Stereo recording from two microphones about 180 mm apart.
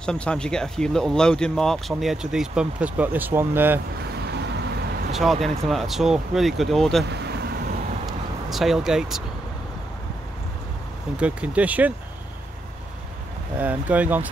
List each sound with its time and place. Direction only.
0.0 s speech: 5° left (ahead or behind); by 3.8 s 10° right (ahead or behind)
4.0 s vehicle: 65° right (ahead or behind)
5.1 s speech: centre (ahead or behind)
7.1 s vehicle: 65° right (ahead or behind)
8.1 s vehicle: centre (ahead or behind)
11.1 s speech: 5° right (ahead or behind)
13.6 s speech: 10° right (ahead or behind)